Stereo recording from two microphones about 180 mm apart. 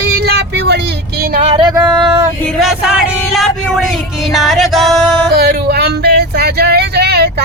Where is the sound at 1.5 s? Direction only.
25° right (ahead or behind).